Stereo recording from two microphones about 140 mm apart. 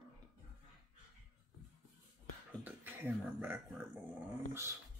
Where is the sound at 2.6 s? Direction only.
15° right (ahead or behind).